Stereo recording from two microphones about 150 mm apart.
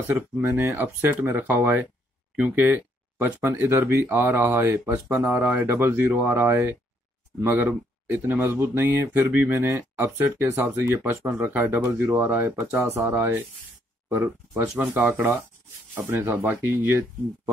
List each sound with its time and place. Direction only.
0.1 s speech: 10° right (ahead or behind)